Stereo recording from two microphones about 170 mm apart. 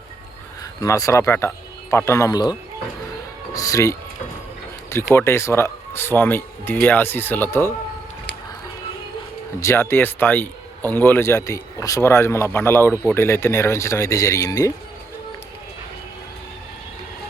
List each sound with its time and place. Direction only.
0.6 s speech: 20° left (ahead or behind)
9.6 s speech: 15° left (ahead or behind)